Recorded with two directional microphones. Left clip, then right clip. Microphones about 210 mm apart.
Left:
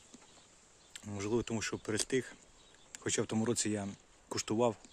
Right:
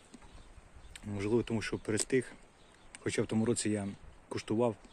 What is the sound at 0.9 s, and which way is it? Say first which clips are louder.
Speech: right 3 dB; 5° left (ahead or behind).